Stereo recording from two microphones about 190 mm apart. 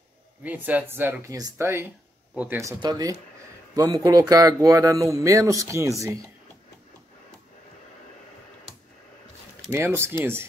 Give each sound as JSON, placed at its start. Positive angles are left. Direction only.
{"t": 0.4, "sound": "speech", "side_deg": -10}
{"t": 9.7, "sound": "speech", "side_deg": -10}